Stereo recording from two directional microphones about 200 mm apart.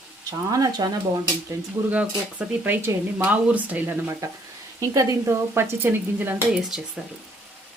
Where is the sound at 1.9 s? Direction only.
5° right (ahead or behind).